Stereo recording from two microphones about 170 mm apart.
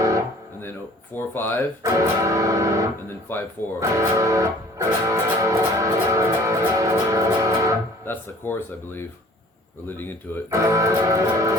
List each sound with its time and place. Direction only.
1.1 s speech: 10° left (ahead or behind)
1.8 s music: 20° right (ahead or behind)
3.1 s speech: 10° left (ahead or behind)
3.8 s music: 20° right (ahead or behind)
8.0 s speech: 10° left (ahead or behind)
10.5 s music: 20° right (ahead or behind)